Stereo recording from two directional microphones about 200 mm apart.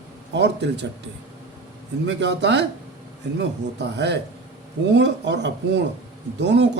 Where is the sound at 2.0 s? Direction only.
60° right (ahead or behind).